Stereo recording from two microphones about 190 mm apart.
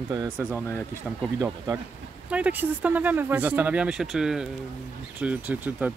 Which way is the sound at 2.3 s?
10° right (ahead or behind).